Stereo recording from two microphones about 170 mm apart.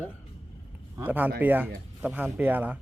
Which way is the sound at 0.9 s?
10° right (ahead or behind).